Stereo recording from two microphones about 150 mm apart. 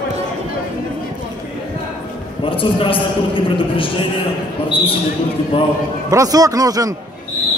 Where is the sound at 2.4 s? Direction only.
35° left (ahead or behind).